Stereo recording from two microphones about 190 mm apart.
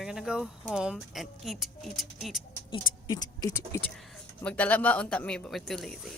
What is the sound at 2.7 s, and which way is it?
Speech, 25° left (ahead or behind).